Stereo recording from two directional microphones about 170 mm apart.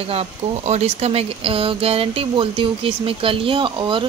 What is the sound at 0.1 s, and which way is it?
A woman's voice, 40° right (ahead or behind).